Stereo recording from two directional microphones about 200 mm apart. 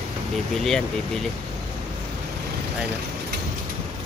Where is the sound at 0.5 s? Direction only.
Centre (ahead or behind).